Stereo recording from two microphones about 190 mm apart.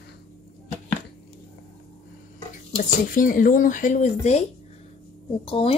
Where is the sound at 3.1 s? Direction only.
45° left (ahead or behind).